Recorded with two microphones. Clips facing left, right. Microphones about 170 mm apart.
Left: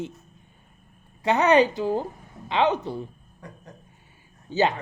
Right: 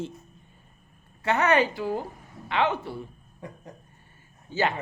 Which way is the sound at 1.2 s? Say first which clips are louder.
Left 4 dB; 15° left (ahead or behind).